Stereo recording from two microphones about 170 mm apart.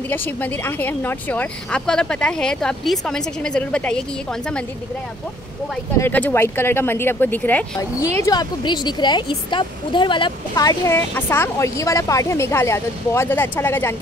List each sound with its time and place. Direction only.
0.1 s speech: 10° left (ahead or behind)
5.9 s speech: 10° left (ahead or behind)
8.3 s speech: 25° left (ahead or behind)